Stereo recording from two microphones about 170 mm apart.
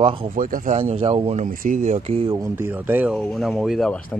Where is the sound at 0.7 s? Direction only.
35° right (ahead or behind).